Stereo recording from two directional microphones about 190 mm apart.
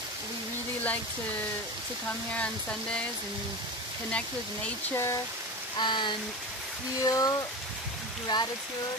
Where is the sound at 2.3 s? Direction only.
5° left (ahead or behind).